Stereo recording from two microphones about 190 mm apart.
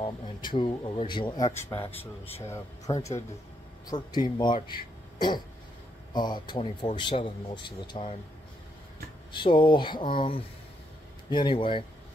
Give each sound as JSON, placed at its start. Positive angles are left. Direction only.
{"t": 0.0, "sound": "speech", "side_deg": 25}
{"t": 6.1, "sound": "speech", "side_deg": 25}
{"t": 9.3, "sound": "speech", "side_deg": 25}